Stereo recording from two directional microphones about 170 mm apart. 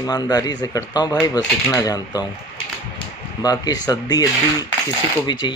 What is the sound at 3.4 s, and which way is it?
Speech, 20° left (ahead or behind).